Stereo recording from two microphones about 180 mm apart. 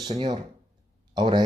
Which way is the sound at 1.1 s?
25° right (ahead or behind).